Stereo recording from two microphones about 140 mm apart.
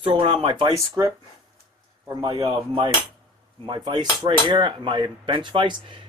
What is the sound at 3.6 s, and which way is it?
Speech, 35° right (ahead or behind).